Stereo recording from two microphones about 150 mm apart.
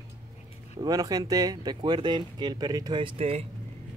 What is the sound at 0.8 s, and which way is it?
Speech, 25° right (ahead or behind).